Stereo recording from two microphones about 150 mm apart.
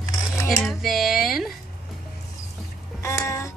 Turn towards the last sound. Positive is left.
turn(degrees=20)  # may be behind; listen again after turning